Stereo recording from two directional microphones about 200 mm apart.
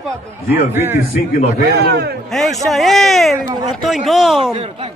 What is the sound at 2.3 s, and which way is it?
Speech, centre (ahead or behind).